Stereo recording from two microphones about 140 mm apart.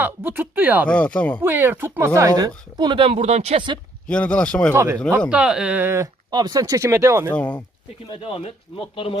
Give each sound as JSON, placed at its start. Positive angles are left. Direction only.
{"t": 0.0, "sound": "speech", "side_deg": -15}
{"t": 0.9, "sound": "speech", "side_deg": 10}
{"t": 1.4, "sound": "speech", "side_deg": -15}
{"t": 3.2, "sound": "speech", "side_deg": -50}
{"t": 4.0, "sound": "speech", "side_deg": 5}
{"t": 4.7, "sound": "speech", "side_deg": -15}
{"t": 5.3, "sound": "speech", "side_deg": -5}
{"t": 6.3, "sound": "speech", "side_deg": -30}
{"t": 7.3, "sound": "speech", "side_deg": 10}
{"t": 8.0, "sound": "speech", "side_deg": 35}